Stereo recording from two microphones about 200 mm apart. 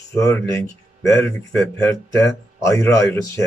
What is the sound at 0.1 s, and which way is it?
A man's voice, 15° left (ahead or behind).